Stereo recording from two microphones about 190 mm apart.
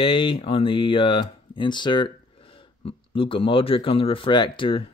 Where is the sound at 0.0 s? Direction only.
25° left (ahead or behind).